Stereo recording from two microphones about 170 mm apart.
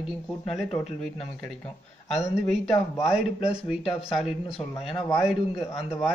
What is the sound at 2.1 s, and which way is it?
Speech, centre (ahead or behind).